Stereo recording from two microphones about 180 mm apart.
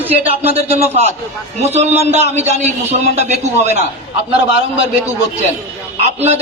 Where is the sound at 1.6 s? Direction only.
35° right (ahead or behind).